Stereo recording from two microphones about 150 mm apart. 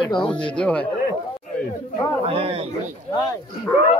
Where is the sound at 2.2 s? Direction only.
40° right (ahead or behind).